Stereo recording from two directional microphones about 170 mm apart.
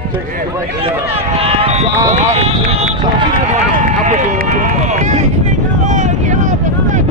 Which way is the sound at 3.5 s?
45° right (ahead or behind).